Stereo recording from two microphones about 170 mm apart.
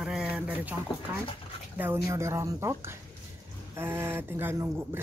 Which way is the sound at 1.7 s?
10° right (ahead or behind).